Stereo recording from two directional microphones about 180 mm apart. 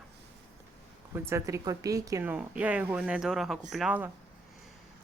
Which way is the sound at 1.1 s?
15° right (ahead or behind).